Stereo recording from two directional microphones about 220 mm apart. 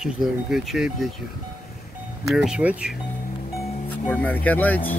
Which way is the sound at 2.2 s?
5° right (ahead or behind).